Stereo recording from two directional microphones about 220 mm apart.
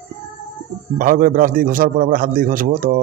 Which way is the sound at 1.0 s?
40° right (ahead or behind).